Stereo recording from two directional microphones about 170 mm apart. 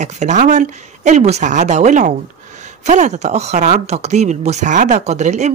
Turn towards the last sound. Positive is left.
turn(degrees=-40)  # may be behind; listen again after turning